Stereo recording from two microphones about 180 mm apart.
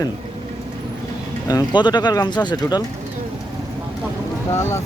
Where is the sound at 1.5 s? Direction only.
20° left (ahead or behind).